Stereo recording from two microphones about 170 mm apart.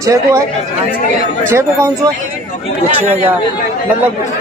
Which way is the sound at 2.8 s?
45° right (ahead or behind).